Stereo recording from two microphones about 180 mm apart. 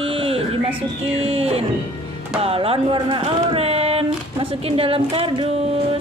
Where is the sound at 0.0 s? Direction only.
30° right (ahead or behind).